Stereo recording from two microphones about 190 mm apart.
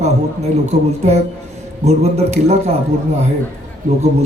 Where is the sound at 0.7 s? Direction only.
35° right (ahead or behind).